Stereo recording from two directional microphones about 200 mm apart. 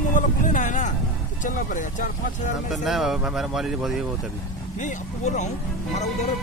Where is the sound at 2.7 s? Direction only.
Centre (ahead or behind).